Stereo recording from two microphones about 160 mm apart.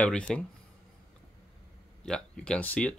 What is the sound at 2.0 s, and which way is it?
Speech, 5° left (ahead or behind).